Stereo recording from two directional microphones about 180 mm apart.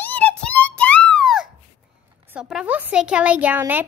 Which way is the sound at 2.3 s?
5° right (ahead or behind).